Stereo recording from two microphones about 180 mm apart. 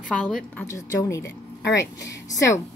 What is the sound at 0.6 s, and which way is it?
Speech, 15° left (ahead or behind).